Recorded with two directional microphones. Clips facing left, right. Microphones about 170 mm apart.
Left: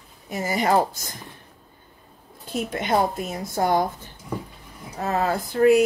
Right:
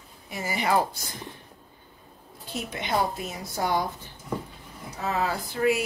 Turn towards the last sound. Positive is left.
turn(degrees=50)  # may be behind; listen again after turning